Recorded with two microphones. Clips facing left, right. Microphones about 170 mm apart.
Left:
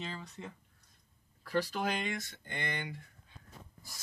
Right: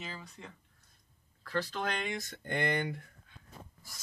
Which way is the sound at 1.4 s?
10° left (ahead or behind).